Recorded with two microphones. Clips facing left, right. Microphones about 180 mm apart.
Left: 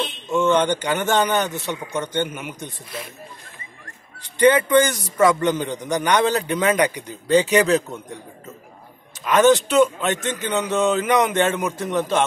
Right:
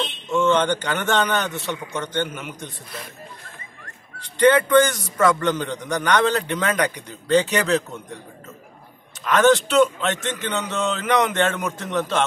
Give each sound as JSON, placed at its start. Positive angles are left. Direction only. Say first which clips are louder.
{"t": 0.3, "sound": "a man's voice", "louder": "left 1 dB", "side_deg": 15}
{"t": 4.4, "sound": "a man's voice", "louder": "even", "side_deg": 15}
{"t": 9.2, "sound": "a man's voice", "louder": "left 1 dB", "side_deg": 10}